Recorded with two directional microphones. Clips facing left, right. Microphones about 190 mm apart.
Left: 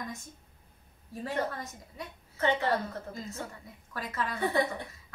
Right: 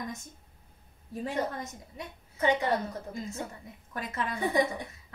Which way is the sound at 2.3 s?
10° right (ahead or behind).